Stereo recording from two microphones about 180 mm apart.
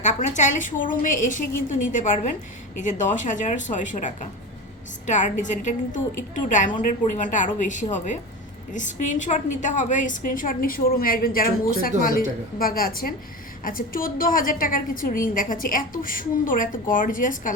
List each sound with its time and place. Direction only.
0.0 s a woman's voice: 40° left (ahead or behind)